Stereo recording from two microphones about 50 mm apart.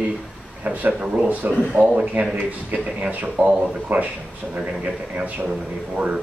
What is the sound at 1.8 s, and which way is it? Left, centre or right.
Speech, right.